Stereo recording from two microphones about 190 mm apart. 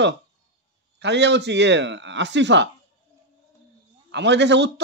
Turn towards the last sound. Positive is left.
turn(degrees=-65)  # may be behind; listen again after turning